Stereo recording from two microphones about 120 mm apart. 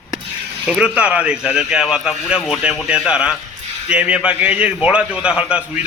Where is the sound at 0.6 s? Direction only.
10° right (ahead or behind).